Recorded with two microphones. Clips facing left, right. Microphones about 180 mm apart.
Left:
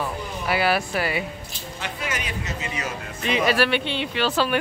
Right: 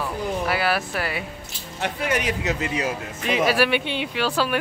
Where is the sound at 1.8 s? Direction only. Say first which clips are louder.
Right 7 dB; 60° right (ahead or behind).